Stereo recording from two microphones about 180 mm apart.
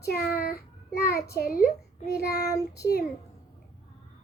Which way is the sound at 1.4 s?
55° left (ahead or behind).